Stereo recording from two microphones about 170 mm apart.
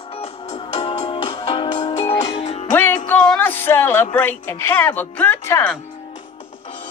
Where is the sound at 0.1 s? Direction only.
35° left (ahead or behind).